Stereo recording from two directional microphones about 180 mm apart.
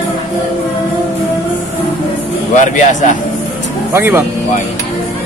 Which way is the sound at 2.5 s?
45° left (ahead or behind).